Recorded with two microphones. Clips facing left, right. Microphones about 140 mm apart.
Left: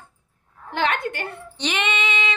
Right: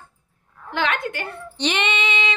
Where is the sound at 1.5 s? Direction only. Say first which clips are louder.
Right 2 dB; 5° left (ahead or behind).